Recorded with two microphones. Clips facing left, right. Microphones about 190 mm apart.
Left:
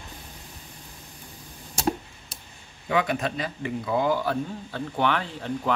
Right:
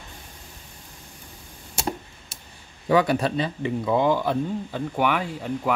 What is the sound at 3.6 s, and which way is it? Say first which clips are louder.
Speech: right 3 dB; 20° right (ahead or behind).